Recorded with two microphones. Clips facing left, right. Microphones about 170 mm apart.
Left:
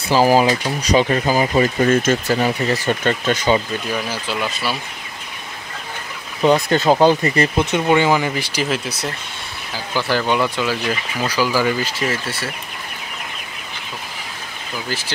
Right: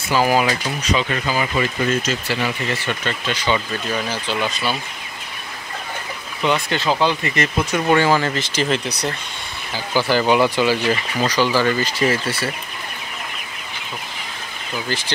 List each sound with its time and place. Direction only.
0.1 s speech: 35° left (ahead or behind)
3.9 s speech: 5° left (ahead or behind)
6.4 s speech: 40° left (ahead or behind)
7.8 s speech: 15° left (ahead or behind)
14.9 s speech: 5° left (ahead or behind)